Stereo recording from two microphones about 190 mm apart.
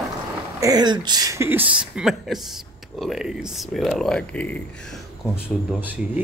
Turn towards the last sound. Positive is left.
turn(degrees=-10)  # may be behind; listen again after turning